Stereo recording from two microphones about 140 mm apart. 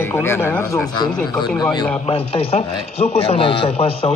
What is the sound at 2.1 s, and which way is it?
A man's voice, 40° left (ahead or behind).